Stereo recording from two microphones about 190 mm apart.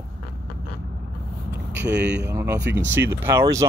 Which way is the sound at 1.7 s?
65° right (ahead or behind).